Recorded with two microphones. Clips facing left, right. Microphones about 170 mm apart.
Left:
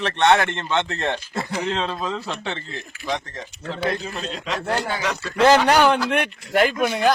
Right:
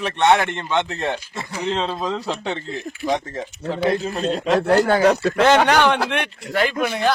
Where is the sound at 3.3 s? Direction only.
35° right (ahead or behind).